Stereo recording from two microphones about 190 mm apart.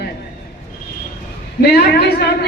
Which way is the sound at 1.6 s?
60° left (ahead or behind).